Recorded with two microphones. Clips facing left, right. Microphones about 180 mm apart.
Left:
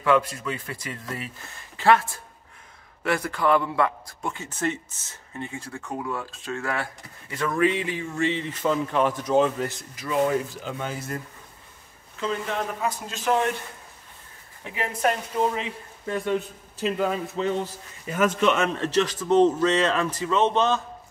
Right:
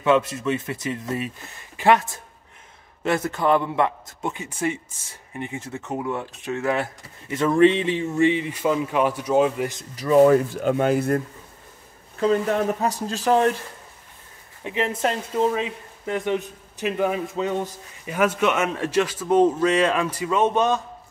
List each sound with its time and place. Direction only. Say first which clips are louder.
0.0 s a man's voice: right 2 dB; 25° right (ahead or behind)
9.9 s speech: right 9 dB; 40° right (ahead or behind); by 11.1 s 60° right (ahead or behind)
12.2 s speech: right 8 dB; 45° right (ahead or behind)
14.6 s a man's voice: right 3 dB; 20° right (ahead or behind)